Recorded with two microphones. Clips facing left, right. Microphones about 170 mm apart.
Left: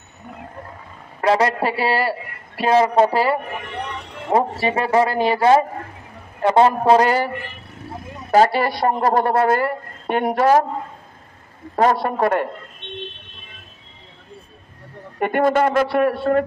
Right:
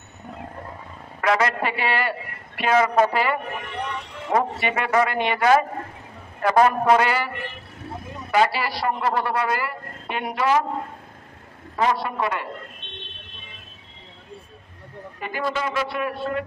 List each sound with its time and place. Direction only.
1.2 s a man's voice: 30° left (ahead or behind)
8.3 s a woman's voice: 45° left (ahead or behind)
11.7 s a woman's voice: 50° left (ahead or behind)
15.1 s speech: 60° left (ahead or behind)